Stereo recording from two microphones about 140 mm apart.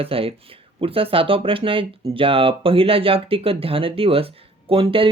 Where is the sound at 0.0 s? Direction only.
40° right (ahead or behind).